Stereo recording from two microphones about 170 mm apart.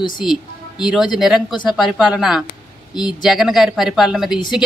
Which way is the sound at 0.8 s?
Centre (ahead or behind).